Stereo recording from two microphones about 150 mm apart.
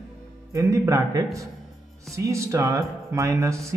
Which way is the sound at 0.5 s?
20° right (ahead or behind).